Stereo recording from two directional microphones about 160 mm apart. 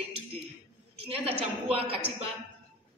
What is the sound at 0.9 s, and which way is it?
Speech, 35° right (ahead or behind).